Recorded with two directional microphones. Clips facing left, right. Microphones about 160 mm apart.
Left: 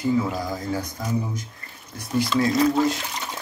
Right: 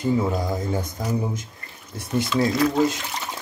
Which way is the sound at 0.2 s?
20° right (ahead or behind).